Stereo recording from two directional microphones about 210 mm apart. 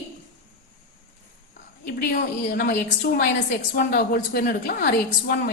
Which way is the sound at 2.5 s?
50° left (ahead or behind).